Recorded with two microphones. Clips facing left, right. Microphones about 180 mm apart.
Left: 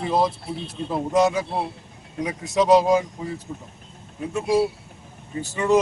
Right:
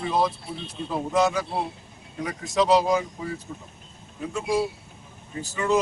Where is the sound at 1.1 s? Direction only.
20° left (ahead or behind).